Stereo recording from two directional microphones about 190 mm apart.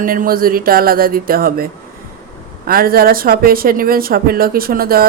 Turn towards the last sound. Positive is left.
turn(degrees=-50)  # may be behind; listen again after turning